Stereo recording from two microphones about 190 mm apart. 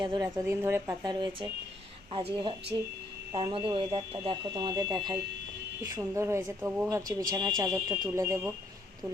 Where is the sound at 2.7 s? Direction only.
20° right (ahead or behind).